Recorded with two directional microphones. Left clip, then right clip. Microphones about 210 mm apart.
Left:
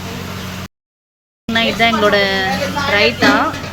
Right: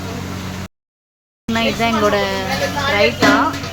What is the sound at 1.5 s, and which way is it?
Speech, 10° right (ahead or behind).